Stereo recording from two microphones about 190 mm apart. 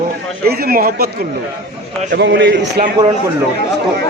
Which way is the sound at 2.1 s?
70° right (ahead or behind).